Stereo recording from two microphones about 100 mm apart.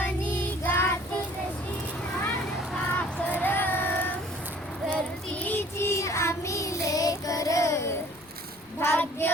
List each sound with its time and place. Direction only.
0.0 s child singing: 20° left (ahead or behind)
3.4 s music: 20° left (ahead or behind)
4.9 s child singing: 15° left (ahead or behind); by 7.8 s 30° left (ahead or behind)
8.8 s child singing: 25° left (ahead or behind)